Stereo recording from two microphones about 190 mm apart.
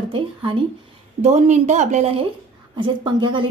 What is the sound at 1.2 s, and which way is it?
A woman's voice, 35° right (ahead or behind).